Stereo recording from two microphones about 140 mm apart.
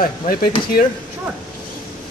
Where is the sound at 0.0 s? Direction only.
90° left.